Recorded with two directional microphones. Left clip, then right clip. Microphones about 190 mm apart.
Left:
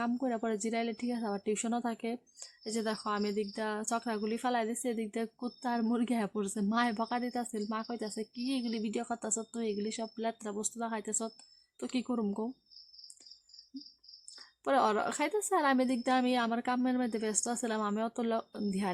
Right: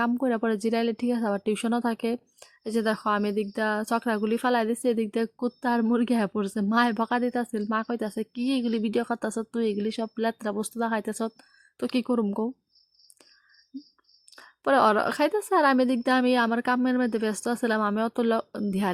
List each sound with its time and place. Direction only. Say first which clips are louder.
0.0 s speech: right 8 dB; 25° right (ahead or behind)
14.3 s speech: right 8 dB; 25° right (ahead or behind)